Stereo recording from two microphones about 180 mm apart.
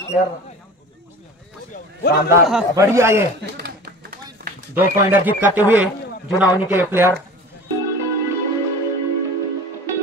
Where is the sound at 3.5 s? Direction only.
60° right (ahead or behind).